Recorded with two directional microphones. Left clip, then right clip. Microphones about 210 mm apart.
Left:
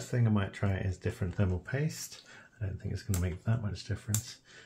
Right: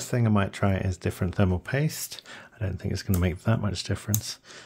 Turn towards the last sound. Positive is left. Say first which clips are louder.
# right 7 dB
turn(degrees=-60)  # may be behind; listen again after turning